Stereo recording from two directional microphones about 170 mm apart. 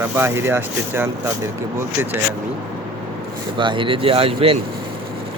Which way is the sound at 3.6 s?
30° right (ahead or behind).